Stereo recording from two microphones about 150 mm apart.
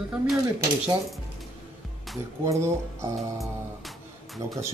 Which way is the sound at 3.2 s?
Centre (ahead or behind).